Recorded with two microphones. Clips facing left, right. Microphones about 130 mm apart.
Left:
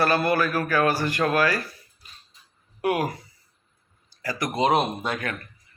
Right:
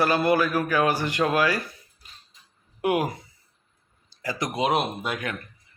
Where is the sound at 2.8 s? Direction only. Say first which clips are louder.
Even; 20° right (ahead or behind).